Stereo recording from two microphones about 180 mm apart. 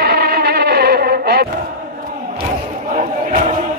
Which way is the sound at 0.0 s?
60° right (ahead or behind).